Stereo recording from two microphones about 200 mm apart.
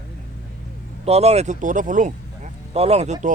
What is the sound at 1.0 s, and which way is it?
Speech, 30° right (ahead or behind).